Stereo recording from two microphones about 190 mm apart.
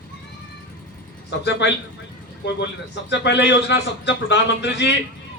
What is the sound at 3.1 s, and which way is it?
A man's voice, 65° left (ahead or behind).